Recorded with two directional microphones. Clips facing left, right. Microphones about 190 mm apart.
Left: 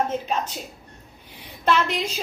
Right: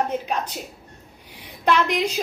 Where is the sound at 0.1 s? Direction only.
15° right (ahead or behind).